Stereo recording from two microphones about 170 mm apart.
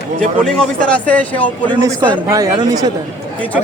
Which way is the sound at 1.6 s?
25° right (ahead or behind).